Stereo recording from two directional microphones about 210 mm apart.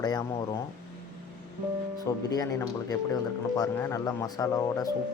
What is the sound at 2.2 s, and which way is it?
Speech, 15° left (ahead or behind).